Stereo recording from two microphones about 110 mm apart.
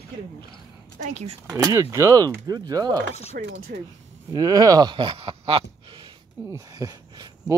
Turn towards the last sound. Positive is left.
turn(degrees=-35)  # may be behind; listen again after turning